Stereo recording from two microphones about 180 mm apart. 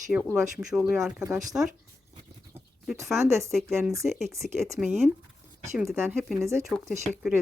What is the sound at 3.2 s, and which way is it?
Speech, 15° right (ahead or behind).